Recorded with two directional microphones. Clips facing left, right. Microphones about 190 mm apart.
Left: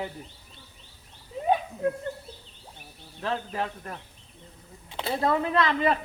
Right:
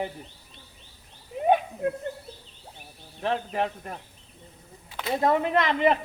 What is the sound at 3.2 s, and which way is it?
Speech, 20° right (ahead or behind).